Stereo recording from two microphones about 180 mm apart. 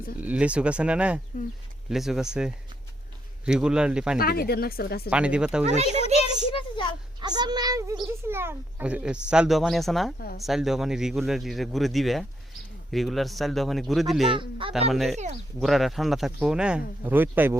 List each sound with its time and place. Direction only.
0.2 s a child's voice: 10° right (ahead or behind)
4.2 s speech: 55° left (ahead or behind)
5.0 s speech: 5° right (ahead or behind)
5.7 s speech: 40° right (ahead or behind)
6.5 s a sound: 30° left (ahead or behind)
7.2 s a child's voice: 25° right (ahead or behind)